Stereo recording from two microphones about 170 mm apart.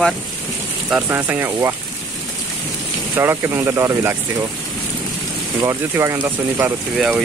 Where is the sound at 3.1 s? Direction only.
15° right (ahead or behind).